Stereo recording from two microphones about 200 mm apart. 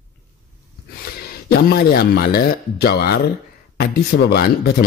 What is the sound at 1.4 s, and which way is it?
Speech, 50° left (ahead or behind).